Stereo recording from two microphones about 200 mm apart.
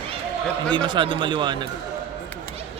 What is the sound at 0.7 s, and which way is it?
Speech, 25° right (ahead or behind).